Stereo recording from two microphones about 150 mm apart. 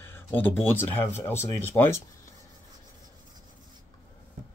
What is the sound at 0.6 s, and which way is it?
Speech, 15° left (ahead or behind).